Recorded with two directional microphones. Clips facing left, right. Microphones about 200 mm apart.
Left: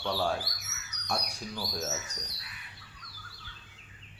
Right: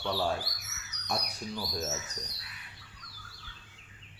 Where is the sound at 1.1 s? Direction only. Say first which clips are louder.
Even; centre (ahead or behind).